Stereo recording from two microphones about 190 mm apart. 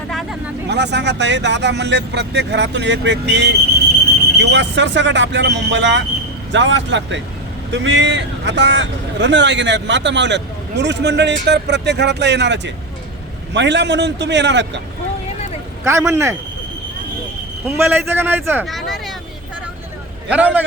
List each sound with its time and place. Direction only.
0.1 s vehicle: centre (ahead or behind)
0.7 s a man's voice: 65° right (ahead or behind)
15.8 s a man's voice: 15° right (ahead or behind)
17.7 s a man's voice: 10° right (ahead or behind)
18.6 s speech: centre (ahead or behind)
20.3 s a man's voice: 10° right (ahead or behind)